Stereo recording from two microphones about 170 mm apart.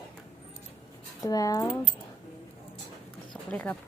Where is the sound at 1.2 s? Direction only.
20° left (ahead or behind).